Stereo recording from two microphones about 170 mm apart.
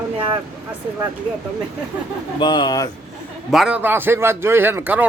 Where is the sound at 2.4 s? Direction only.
25° left (ahead or behind).